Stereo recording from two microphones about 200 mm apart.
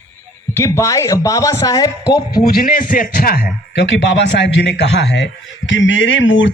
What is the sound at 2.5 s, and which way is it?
A man's voice, 45° left (ahead or behind).